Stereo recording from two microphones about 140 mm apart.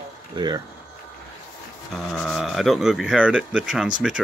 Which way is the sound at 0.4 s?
35° right (ahead or behind).